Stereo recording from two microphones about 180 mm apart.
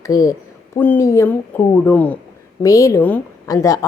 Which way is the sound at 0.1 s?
20° left (ahead or behind).